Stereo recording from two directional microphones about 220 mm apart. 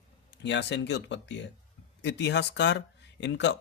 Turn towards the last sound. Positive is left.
turn(degrees=55)  # may be behind; listen again after turning